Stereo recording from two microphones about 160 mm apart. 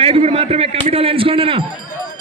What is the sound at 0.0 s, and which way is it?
A man's voice, 40° right (ahead or behind).